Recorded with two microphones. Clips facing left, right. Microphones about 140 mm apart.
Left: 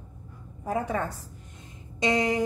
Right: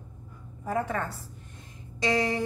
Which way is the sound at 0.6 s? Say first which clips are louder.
Left 1 dB; 10° left (ahead or behind).